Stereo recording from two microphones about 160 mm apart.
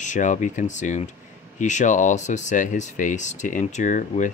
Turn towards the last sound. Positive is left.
turn(degrees=50)  # may be behind; listen again after turning